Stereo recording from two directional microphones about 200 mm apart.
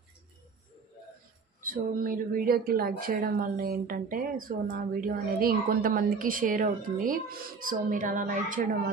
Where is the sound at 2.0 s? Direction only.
45° right (ahead or behind).